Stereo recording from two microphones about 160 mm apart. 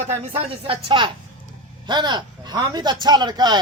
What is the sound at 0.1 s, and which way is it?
A man's voice, 35° right (ahead or behind).